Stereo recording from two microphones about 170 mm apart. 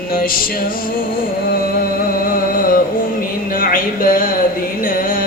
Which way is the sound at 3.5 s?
55° left (ahead or behind).